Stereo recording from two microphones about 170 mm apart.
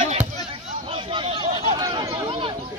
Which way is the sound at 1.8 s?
20° right (ahead or behind).